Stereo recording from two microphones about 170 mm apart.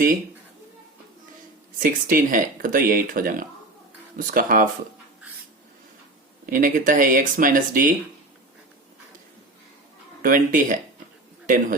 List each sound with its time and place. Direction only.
1.8 s speech: 55° right (ahead or behind)
6.4 s speech: 55° right (ahead or behind)
10.2 s speech: 55° right (ahead or behind)